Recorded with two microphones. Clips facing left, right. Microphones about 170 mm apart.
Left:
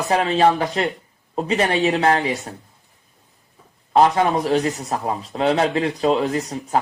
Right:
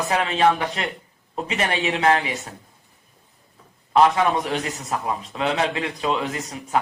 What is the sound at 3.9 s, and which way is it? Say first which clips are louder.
A man's voice: left 2 dB; 35° left (ahead or behind).